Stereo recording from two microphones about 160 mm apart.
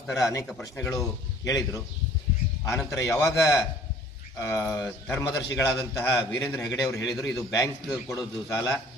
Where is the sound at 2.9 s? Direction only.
20° left (ahead or behind).